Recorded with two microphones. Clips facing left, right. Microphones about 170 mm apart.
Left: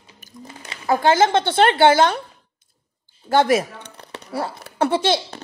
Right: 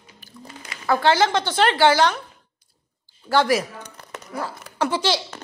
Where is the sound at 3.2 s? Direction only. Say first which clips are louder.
Left 3 dB; 25° left (ahead or behind).